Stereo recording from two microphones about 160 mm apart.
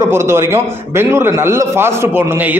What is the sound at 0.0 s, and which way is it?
A man's voice, 15° right (ahead or behind).